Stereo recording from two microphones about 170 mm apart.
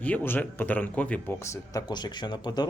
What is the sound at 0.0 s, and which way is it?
Speech, 10° left (ahead or behind).